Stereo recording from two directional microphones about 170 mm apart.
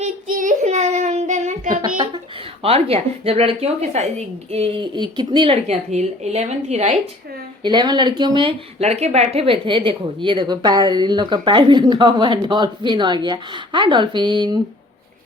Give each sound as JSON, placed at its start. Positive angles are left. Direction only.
{"t": 0.0, "sound": "child singing", "side_deg": -50}
{"t": 2.6, "sound": "a woman's voice", "side_deg": -35}
{"t": 7.6, "sound": "a woman's voice", "side_deg": -25}